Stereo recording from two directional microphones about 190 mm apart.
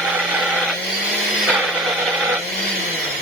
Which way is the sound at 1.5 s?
5° right (ahead or behind).